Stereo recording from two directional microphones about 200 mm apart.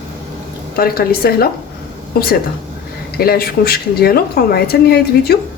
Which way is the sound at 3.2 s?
50° left (ahead or behind).